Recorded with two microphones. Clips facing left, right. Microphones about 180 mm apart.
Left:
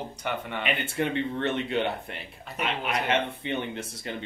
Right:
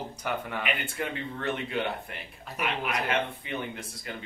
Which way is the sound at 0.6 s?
25° left (ahead or behind).